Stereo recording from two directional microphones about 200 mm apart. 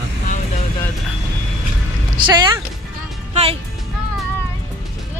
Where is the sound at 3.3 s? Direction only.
30° right (ahead or behind).